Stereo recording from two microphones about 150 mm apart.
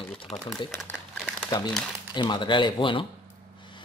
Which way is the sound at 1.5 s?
30° left (ahead or behind).